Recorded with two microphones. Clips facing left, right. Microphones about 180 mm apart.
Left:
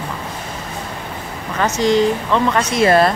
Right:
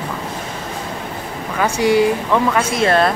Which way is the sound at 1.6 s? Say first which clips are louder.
Right 1 dB; 10° right (ahead or behind).